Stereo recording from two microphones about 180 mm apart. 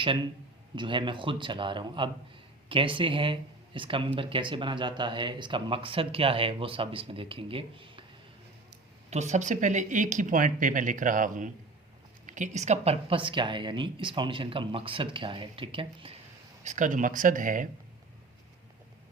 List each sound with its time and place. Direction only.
0.8 s speech: 25° right (ahead or behind)
9.0 s speech: 40° right (ahead or behind)
16.6 s speech: 45° right (ahead or behind)